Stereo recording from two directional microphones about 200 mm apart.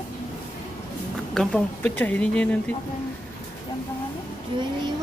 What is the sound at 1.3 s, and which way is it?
Speech, 5° left (ahead or behind).